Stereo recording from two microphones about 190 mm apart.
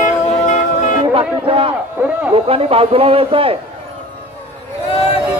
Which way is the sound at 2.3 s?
30° right (ahead or behind).